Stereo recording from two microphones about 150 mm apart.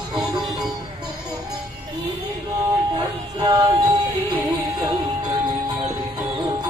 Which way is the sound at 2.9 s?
30° right (ahead or behind).